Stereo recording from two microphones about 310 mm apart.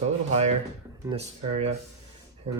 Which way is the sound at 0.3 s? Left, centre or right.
Right.